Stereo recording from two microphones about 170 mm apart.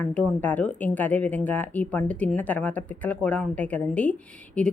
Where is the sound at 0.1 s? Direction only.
10° left (ahead or behind).